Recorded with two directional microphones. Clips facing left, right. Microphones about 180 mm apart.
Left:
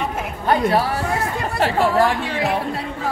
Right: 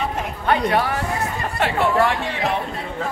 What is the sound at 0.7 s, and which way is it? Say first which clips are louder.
Speech: left 2 dB; 35° left (ahead or behind).